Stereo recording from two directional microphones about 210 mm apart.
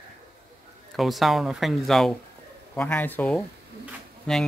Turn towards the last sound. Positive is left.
turn(degrees=5)  # may be behind; listen again after turning